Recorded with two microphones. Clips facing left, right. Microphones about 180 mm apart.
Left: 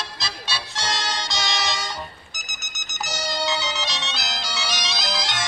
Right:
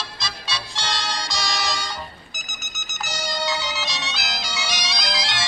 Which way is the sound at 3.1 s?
5° left (ahead or behind).